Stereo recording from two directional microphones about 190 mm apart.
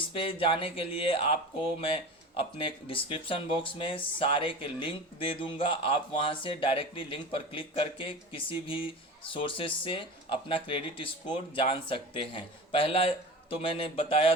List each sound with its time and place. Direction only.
0.1 s speech: 30° left (ahead or behind)